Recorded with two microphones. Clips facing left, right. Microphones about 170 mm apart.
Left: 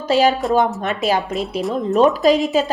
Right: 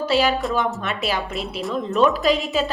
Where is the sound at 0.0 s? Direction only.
40° left (ahead or behind).